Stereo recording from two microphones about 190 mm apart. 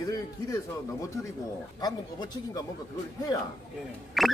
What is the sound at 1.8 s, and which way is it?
Speech, 20° left (ahead or behind).